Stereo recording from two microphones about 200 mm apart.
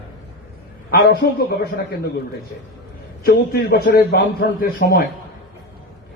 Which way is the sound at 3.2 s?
50° left (ahead or behind).